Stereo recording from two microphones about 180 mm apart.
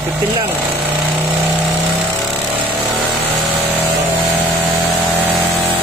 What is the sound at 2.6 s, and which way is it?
Vehicle, centre (ahead or behind).